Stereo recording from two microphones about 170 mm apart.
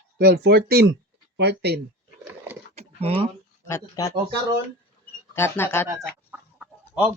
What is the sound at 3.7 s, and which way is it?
Speech, 20° left (ahead or behind).